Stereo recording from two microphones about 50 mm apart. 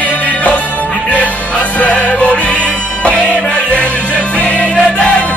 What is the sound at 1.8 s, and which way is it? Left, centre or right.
Music, left.